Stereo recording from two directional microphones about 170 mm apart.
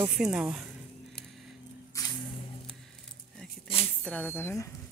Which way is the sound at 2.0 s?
20° left (ahead or behind).